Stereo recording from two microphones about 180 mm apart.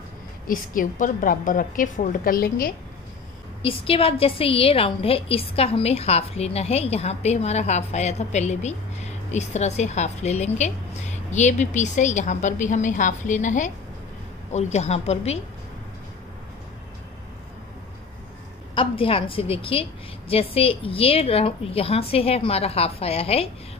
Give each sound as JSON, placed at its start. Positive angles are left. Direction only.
{"t": 0.5, "sound": "a woman's voice", "side_deg": 45}
{"t": 3.6, "sound": "a woman's voice", "side_deg": 30}
{"t": 18.8, "sound": "a woman's voice", "side_deg": 30}